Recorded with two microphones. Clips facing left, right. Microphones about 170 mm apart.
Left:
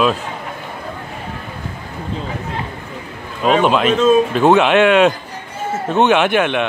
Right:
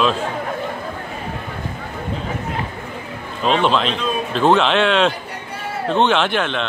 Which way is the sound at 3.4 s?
45° left (ahead or behind).